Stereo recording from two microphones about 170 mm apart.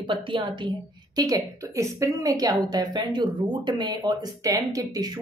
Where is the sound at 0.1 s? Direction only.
30° right (ahead or behind).